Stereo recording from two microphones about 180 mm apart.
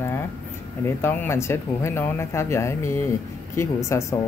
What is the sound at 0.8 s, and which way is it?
Speech, 15° left (ahead or behind).